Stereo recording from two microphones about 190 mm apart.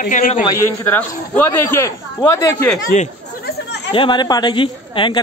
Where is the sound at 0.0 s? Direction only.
50° left (ahead or behind).